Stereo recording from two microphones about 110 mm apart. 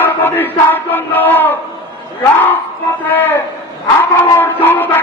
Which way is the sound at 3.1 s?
20° left (ahead or behind).